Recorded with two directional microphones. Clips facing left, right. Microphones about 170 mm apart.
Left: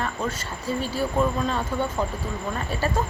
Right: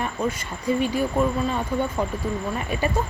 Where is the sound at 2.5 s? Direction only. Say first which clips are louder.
Right 2 dB; 15° right (ahead or behind).